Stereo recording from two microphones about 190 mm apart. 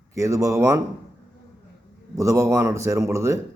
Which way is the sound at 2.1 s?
15° right (ahead or behind).